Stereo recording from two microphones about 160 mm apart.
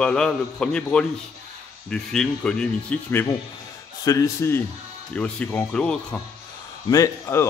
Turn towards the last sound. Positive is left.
turn(degrees=20)  # may be behind; listen again after turning